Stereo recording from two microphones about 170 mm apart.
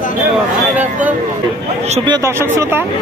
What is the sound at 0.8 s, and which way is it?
Speech, 10° right (ahead or behind).